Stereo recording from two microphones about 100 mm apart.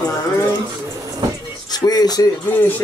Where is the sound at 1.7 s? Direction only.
40° left (ahead or behind).